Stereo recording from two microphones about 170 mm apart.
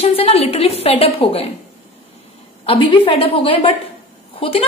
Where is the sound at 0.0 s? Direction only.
35° left (ahead or behind).